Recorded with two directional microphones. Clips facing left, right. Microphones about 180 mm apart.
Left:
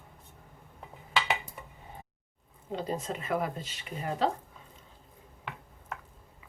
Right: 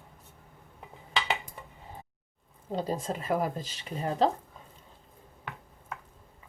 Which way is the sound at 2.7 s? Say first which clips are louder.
Right 2 dB; 35° right (ahead or behind).